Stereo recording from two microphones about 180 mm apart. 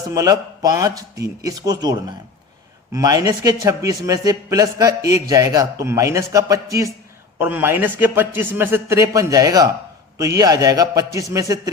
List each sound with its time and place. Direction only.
0.1 s a man's voice: 20° right (ahead or behind)